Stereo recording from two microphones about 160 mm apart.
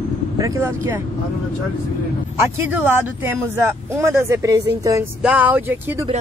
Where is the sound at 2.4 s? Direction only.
15° right (ahead or behind).